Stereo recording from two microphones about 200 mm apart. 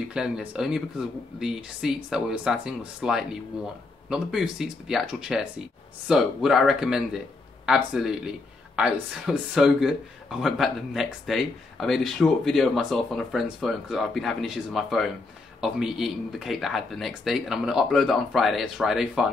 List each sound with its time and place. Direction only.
0.1 s speech: 5° right (ahead or behind)